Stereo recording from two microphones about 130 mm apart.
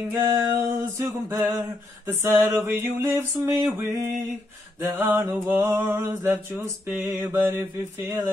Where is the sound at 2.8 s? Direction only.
20° right (ahead or behind).